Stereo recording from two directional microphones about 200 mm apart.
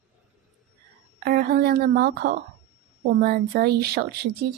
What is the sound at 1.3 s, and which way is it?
Speech, 50° right (ahead or behind).